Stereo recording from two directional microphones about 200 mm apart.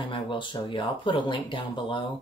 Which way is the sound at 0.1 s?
25° left (ahead or behind).